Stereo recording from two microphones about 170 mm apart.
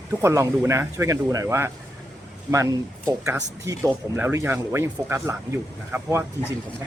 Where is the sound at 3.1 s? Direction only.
20° right (ahead or behind).